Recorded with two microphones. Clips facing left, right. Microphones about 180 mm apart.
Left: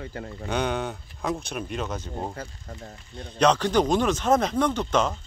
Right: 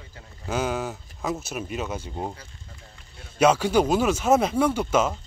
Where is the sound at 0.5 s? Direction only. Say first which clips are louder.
Even; 5° right (ahead or behind).